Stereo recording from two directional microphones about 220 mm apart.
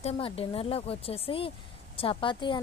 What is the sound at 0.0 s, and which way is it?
A woman's voice, 25° left (ahead or behind).